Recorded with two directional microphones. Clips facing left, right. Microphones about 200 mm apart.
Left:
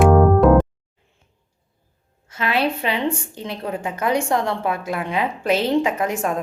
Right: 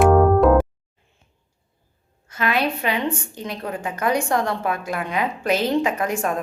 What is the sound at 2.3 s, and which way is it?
A woman's voice, 25° left (ahead or behind).